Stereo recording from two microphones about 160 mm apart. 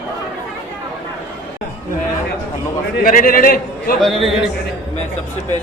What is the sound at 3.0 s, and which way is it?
Speech, 60° left (ahead or behind).